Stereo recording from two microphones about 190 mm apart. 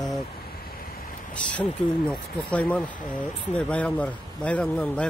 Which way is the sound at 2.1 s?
5° left (ahead or behind).